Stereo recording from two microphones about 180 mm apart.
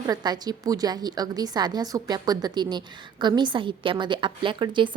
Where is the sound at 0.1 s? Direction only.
20° right (ahead or behind).